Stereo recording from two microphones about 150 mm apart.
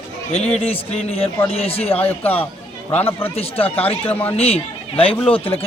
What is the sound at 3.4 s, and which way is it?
Speech, 40° left (ahead or behind).